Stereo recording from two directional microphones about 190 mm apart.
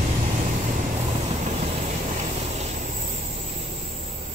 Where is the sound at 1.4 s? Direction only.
35° right (ahead or behind).